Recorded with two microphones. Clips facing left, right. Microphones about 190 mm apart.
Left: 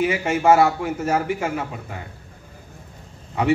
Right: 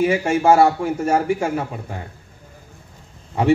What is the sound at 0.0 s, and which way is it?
A man's voice, 30° right (ahead or behind).